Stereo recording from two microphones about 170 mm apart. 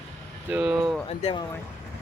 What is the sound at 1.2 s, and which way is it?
Speech, 30° left (ahead or behind).